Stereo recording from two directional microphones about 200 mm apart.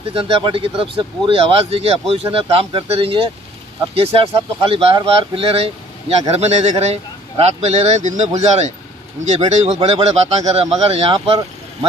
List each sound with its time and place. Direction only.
0.1 s speech: 30° right (ahead or behind)